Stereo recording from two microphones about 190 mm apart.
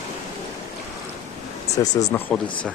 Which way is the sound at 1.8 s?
20° left (ahead or behind).